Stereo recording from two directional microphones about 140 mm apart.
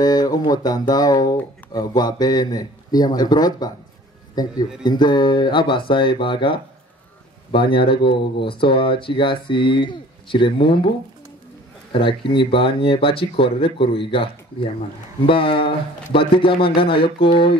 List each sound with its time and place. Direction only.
0.0 s speech: 30° left (ahead or behind)
11.9 s speech: 40° left (ahead or behind)